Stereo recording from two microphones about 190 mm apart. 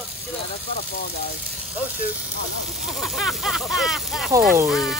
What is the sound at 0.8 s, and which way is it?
Speech, 55° left (ahead or behind).